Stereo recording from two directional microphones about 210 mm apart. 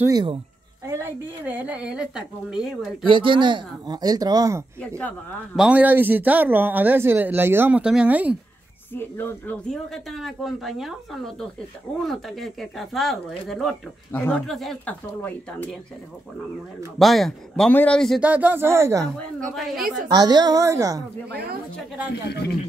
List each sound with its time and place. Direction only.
0.1 s speech: 20° right (ahead or behind); by 3.1 s centre (ahead or behind)
3.1 s speech: 25° right (ahead or behind)
4.7 s speech: 5° left (ahead or behind)
5.6 s speech: 5° right (ahead or behind)
8.9 s speech: 10° left (ahead or behind)
17.0 s speech: centre (ahead or behind)
19.1 s speech: centre (ahead or behind)
20.1 s speech: 20° right (ahead or behind)